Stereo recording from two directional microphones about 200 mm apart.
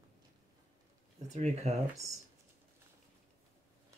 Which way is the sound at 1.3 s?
35° right (ahead or behind).